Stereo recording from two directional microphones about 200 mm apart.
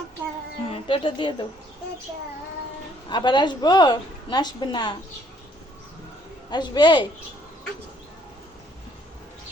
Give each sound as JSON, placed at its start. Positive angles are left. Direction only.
{"t": 0.7, "sound": "speech", "side_deg": 25}
{"t": 3.1, "sound": "a woman's voice", "side_deg": 20}
{"t": 6.5, "sound": "a woman's voice", "side_deg": 20}